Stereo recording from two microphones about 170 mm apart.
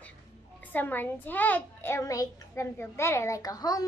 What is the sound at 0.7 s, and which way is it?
A child's voice, 10° left (ahead or behind).